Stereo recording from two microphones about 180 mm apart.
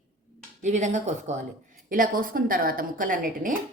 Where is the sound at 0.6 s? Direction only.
40° right (ahead or behind).